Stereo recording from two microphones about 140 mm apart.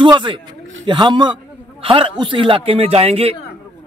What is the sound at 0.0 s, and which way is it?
Speech, 35° right (ahead or behind).